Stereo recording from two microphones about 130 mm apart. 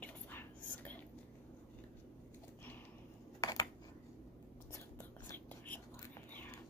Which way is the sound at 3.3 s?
30° left (ahead or behind).